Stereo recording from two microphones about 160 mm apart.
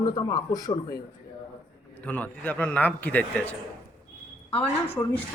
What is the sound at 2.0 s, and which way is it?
A man's voice, 10° left (ahead or behind).